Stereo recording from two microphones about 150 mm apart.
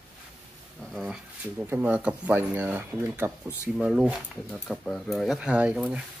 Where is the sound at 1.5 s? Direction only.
10° right (ahead or behind).